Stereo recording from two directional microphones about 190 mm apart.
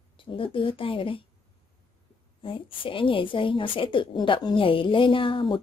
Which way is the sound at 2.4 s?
25° left (ahead or behind).